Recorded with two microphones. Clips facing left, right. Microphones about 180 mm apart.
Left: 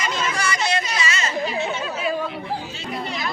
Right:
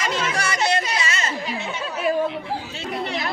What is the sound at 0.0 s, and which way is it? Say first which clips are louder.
Music: even; 70° right (ahead or behind).